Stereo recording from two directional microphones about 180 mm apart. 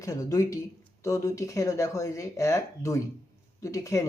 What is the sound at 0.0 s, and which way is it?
Speech, 20° left (ahead or behind).